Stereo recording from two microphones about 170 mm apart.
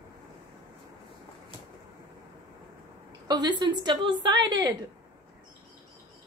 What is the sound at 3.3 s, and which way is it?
A woman's voice, 25° right (ahead or behind).